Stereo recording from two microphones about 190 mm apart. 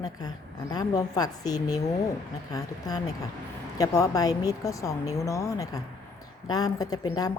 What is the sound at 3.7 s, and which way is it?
A woman's voice, 20° left (ahead or behind).